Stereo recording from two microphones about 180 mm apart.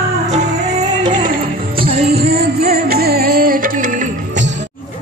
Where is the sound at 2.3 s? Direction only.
60° right (ahead or behind).